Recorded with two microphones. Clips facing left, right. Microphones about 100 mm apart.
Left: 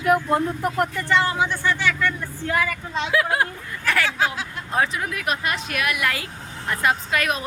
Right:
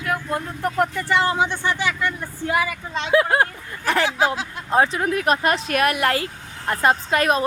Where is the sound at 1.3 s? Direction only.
25° right (ahead or behind).